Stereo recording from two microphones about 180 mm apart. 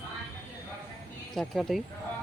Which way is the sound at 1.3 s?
Centre (ahead or behind).